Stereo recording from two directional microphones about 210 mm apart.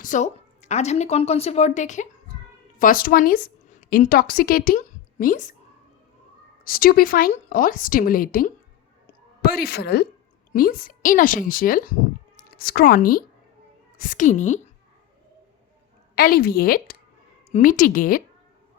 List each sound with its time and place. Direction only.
0.0 s a woman's voice: 35° left (ahead or behind)
6.7 s a woman's voice: 45° left (ahead or behind)
16.1 s a woman's voice: 45° left (ahead or behind)